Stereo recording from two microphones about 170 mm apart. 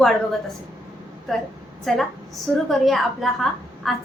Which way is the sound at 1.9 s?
5° left (ahead or behind).